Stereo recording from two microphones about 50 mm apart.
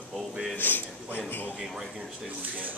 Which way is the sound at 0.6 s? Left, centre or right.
Left.